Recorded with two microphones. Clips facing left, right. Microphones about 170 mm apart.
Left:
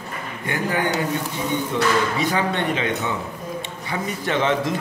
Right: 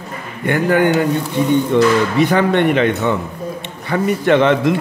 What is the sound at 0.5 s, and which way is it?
Speech, 60° right (ahead or behind).